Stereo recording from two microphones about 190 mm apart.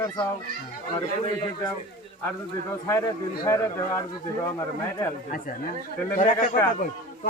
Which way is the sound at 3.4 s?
15° left (ahead or behind).